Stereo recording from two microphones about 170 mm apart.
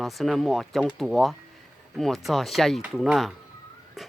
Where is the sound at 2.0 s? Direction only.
Centre (ahead or behind).